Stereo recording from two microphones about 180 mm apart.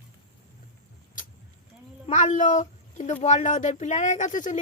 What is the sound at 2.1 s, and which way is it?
Speech, 40° left (ahead or behind).